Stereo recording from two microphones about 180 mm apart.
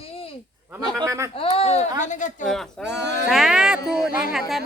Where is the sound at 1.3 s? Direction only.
30° left (ahead or behind).